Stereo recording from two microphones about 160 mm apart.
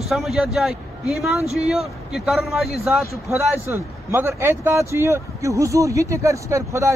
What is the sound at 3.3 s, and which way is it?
Speech, 15° right (ahead or behind).